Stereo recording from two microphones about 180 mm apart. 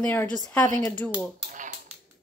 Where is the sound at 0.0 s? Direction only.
10° left (ahead or behind).